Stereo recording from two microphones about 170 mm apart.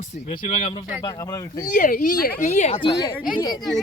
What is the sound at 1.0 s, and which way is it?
Speech, 20° left (ahead or behind).